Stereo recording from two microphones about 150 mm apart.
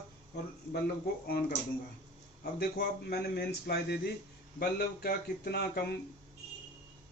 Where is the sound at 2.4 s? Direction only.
90° left.